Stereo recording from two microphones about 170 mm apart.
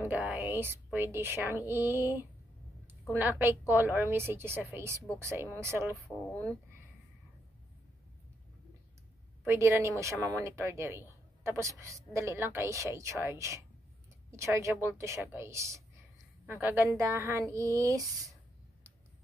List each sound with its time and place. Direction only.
0.0 s a woman's voice: 10° right (ahead or behind)
6.0 s speech: 10° left (ahead or behind)
9.5 s a woman's voice: 15° right (ahead or behind)